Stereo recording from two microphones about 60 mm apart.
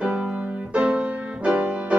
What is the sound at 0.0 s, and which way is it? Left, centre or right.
Music, right.